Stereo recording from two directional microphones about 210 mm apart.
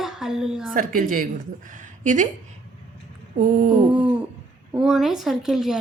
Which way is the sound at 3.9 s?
5° right (ahead or behind).